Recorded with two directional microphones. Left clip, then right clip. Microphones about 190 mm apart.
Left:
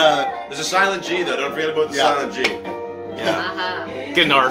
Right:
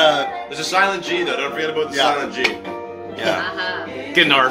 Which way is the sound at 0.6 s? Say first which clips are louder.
Right 1 dB; 30° left (ahead or behind).